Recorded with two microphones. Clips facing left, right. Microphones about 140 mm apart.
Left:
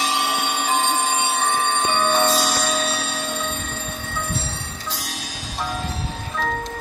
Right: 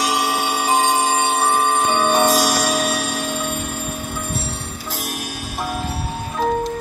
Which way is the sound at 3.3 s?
10° right (ahead or behind).